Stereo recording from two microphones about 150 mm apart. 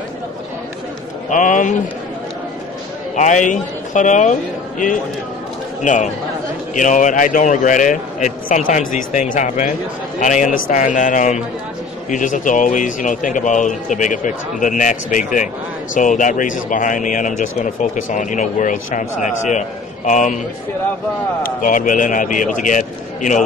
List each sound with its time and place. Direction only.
1.3 s speech: 55° left (ahead or behind)
3.2 s speech: 55° left (ahead or behind)
6.7 s speech: 55° left (ahead or behind)
21.4 s speech: 65° left (ahead or behind)